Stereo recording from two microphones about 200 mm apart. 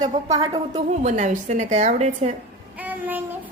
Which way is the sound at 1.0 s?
35° right (ahead or behind).